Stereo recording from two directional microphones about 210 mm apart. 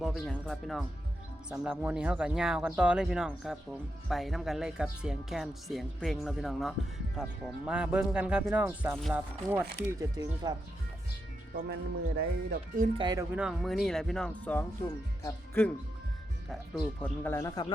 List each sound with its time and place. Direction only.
0.0 s speech: 5° left (ahead or behind); by 10.5 s 15° right (ahead or behind)
11.5 s speech: 45° right (ahead or behind)
13.0 s speech: 20° right (ahead or behind)
13.3 s speech: 5° right (ahead or behind); by 17.7 s 20° left (ahead or behind)